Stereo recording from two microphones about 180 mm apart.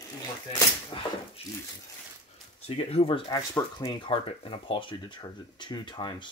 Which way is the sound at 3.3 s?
20° left (ahead or behind).